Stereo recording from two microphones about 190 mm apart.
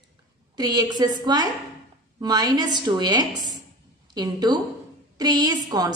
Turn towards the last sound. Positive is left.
turn(degrees=-20)  # may be behind; listen again after turning